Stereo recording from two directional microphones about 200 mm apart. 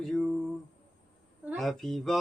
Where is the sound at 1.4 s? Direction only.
Centre (ahead or behind).